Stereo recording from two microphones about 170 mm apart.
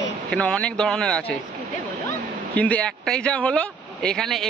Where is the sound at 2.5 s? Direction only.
10° left (ahead or behind).